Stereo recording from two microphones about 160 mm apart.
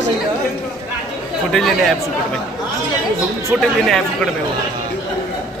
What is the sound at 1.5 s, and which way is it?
Speech, centre (ahead or behind).